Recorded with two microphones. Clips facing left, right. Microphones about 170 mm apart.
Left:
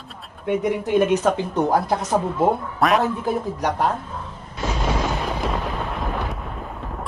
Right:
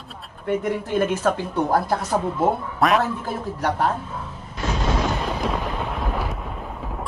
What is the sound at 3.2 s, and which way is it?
Speech, 15° left (ahead or behind).